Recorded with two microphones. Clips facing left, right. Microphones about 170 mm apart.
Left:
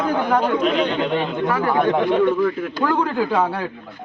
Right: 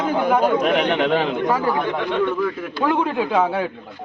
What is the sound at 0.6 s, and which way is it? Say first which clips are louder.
Speech: right 1 dB; 65° right (ahead or behind).